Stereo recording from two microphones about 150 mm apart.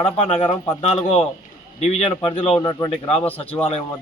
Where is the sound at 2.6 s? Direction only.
25° left (ahead or behind).